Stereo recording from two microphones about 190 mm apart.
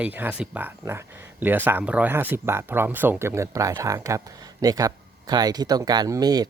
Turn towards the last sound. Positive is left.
turn(degrees=-20)  # may be behind; listen again after turning